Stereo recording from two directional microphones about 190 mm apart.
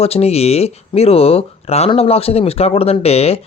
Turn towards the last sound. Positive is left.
turn(degrees=35)  # may be behind; listen again after turning